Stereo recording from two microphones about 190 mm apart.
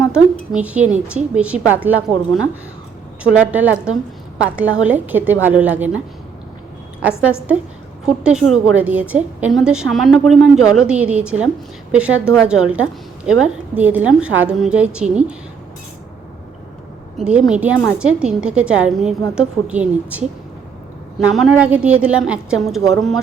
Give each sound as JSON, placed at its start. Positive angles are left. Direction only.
{"t": 0.0, "sound": "a woman's voice", "side_deg": -5}
{"t": 3.5, "sound": "a woman's voice", "side_deg": -10}
{"t": 8.2, "sound": "a woman's voice", "side_deg": -5}
{"t": 17.2, "sound": "a woman's voice", "side_deg": -5}